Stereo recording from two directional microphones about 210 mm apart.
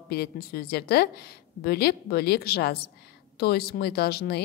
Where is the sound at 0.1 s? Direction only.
50° left (ahead or behind).